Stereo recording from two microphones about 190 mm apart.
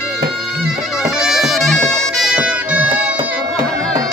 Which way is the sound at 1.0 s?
Centre (ahead or behind).